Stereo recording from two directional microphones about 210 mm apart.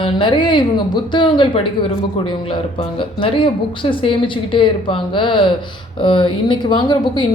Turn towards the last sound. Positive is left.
turn(degrees=20)  # may be behind; listen again after turning